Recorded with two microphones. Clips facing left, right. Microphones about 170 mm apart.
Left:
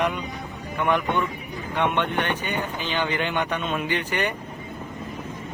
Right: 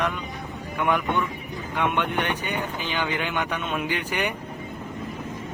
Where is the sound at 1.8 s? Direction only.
10° right (ahead or behind).